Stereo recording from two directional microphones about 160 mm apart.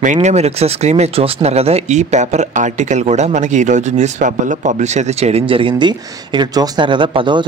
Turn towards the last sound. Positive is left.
turn(degrees=-30)  # may be behind; listen again after turning